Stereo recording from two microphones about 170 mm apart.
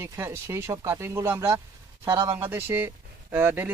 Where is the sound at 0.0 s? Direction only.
15° right (ahead or behind).